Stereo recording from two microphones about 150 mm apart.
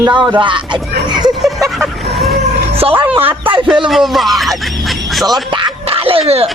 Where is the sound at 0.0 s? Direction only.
30° right (ahead or behind).